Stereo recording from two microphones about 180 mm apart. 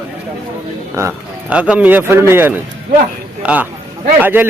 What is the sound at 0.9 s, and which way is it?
A man's voice, 10° right (ahead or behind).